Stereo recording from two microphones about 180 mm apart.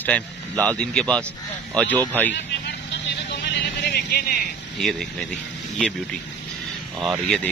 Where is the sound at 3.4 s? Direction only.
65° left (ahead or behind).